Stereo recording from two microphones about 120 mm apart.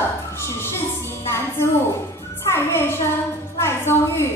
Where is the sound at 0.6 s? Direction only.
20° left (ahead or behind).